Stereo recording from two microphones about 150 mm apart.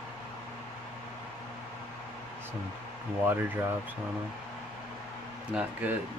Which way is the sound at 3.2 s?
15° right (ahead or behind).